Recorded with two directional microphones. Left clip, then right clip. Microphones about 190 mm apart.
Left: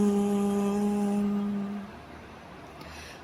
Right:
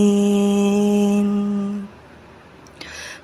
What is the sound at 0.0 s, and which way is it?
Mantra, 30° right (ahead or behind).